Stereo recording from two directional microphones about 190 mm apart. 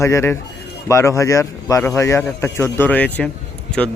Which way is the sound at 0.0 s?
15° left (ahead or behind).